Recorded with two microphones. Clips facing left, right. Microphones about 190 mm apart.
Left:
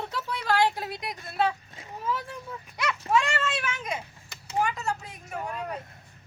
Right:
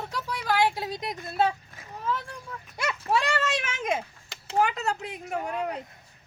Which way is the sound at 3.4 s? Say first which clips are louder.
Right 1 dB; 85° right.